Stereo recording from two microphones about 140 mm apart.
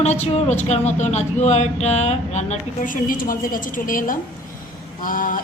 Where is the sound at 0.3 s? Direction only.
50° left (ahead or behind).